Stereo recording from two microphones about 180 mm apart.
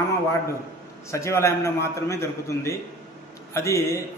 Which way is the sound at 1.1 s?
15° left (ahead or behind).